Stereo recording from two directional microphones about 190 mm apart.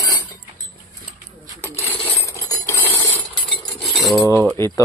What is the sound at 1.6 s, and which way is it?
Coin, 10° left (ahead or behind).